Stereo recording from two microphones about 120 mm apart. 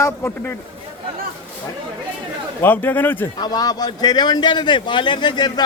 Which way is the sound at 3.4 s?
35° left (ahead or behind).